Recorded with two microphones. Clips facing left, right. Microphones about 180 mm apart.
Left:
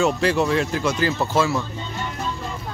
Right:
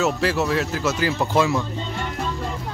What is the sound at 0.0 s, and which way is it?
Speech, 5° right (ahead or behind).